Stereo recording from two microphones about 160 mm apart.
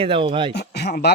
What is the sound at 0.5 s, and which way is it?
Speech, 90° left.